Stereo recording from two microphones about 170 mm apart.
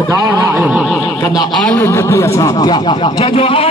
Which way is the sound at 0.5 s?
10° right (ahead or behind).